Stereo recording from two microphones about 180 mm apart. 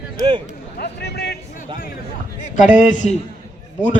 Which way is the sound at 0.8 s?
65° left (ahead or behind).